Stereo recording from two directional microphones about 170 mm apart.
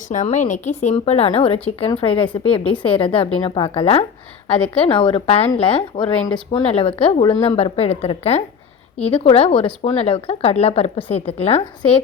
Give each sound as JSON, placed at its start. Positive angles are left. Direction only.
{"t": 0.1, "sound": "speech", "side_deg": 45}